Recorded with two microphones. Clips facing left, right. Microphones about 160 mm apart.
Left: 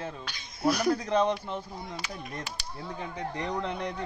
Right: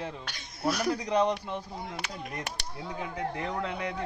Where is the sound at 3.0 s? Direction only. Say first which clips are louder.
Right 1 dB; 5° right (ahead or behind).